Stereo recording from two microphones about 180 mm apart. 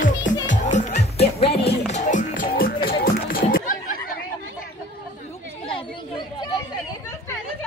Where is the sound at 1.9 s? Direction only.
45° left (ahead or behind).